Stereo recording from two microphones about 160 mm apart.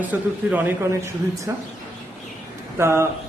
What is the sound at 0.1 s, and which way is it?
Speech, 10° right (ahead or behind).